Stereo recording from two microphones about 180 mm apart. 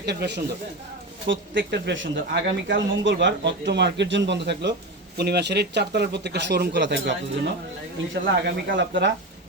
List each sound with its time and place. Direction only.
0.0 s speech: 65° right (ahead or behind)
1.3 s speech: 80° right
8.4 s speech: 65° right (ahead or behind); by 9.1 s 80° right